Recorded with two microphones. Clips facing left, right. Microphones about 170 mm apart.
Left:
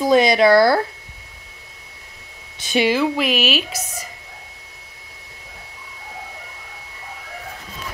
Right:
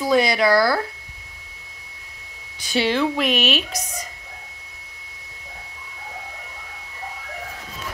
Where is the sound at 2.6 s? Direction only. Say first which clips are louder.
Left 3 dB; 20° left (ahead or behind).